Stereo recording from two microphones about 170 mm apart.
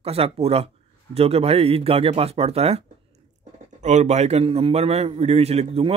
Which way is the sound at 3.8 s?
45° right (ahead or behind).